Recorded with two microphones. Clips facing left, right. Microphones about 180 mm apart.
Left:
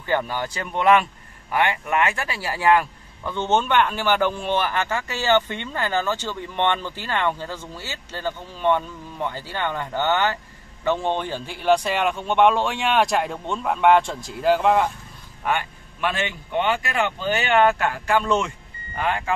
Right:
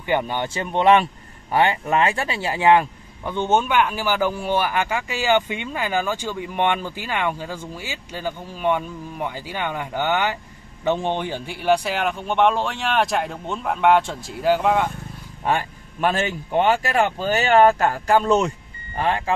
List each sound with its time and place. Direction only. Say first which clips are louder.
0.0 s speech: right 2 dB; 15° right (ahead or behind); by 14.9 s centre (ahead or behind)
15.4 s a man's voice: right 2 dB; 35° right (ahead or behind)